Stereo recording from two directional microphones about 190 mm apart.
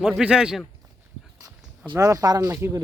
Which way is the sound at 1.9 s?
15° right (ahead or behind).